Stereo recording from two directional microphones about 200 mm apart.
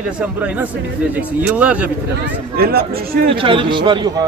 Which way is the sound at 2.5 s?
50° right (ahead or behind).